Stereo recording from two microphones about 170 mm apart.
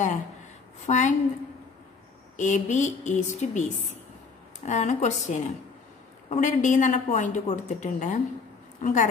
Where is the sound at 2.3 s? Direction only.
45° left (ahead or behind).